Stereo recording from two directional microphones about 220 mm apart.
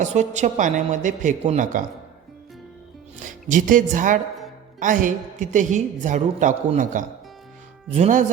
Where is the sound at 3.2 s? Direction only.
35° right (ahead or behind).